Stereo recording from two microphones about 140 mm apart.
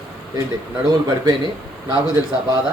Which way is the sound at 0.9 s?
25° right (ahead or behind).